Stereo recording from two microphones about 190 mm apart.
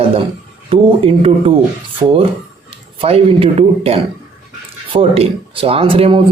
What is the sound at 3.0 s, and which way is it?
Speech, 30° right (ahead or behind).